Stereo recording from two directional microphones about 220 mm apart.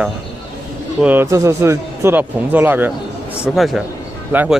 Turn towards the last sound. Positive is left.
turn(degrees=-10)  # may be behind; listen again after turning